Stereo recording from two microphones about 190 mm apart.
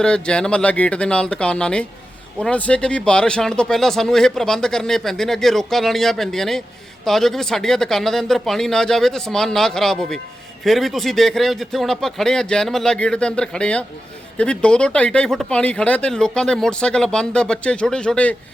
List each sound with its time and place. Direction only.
0.0 s speech: 5° left (ahead or behind)